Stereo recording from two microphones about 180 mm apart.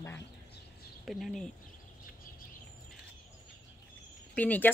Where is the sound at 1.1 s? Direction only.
Centre (ahead or behind).